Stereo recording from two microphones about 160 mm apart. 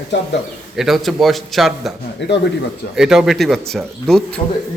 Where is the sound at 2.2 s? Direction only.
90° left.